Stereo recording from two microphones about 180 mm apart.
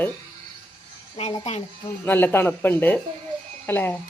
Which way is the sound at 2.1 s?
10° left (ahead or behind).